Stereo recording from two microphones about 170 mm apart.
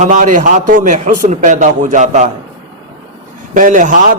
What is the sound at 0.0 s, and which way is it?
A man's voice, 50° right (ahead or behind).